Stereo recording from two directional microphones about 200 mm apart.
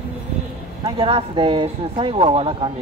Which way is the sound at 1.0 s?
25° right (ahead or behind).